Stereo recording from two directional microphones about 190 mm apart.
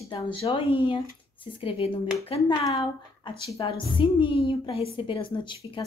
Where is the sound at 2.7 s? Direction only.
20° left (ahead or behind).